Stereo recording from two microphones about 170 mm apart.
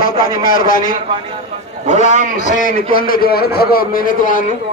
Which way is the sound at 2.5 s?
55° left (ahead or behind).